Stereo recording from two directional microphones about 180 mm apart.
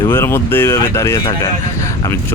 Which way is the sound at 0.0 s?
15° left (ahead or behind).